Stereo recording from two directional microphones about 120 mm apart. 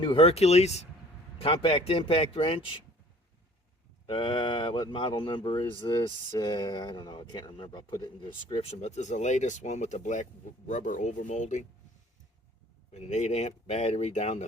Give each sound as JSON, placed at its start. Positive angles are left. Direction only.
{"t": 0.0, "sound": "speech", "side_deg": 50}
{"t": 1.4, "sound": "speech", "side_deg": 50}
{"t": 4.0, "sound": "speech", "side_deg": 40}
{"t": 12.9, "sound": "speech", "side_deg": 65}